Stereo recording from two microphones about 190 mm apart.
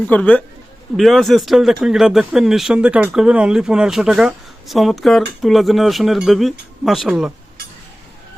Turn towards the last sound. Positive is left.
turn(degrees=0)  # may be behind; listen again after turning